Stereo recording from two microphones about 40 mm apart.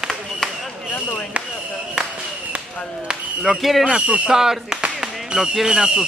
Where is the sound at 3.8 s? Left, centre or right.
Right.